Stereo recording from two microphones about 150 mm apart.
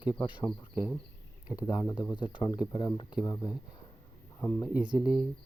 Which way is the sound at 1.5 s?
25° left (ahead or behind).